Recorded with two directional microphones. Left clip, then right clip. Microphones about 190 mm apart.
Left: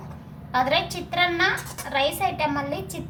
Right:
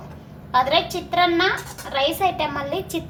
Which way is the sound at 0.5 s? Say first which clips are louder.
Right 4 dB; 10° right (ahead or behind).